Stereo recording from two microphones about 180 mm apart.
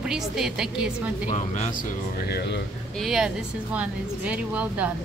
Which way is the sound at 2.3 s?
65° left (ahead or behind).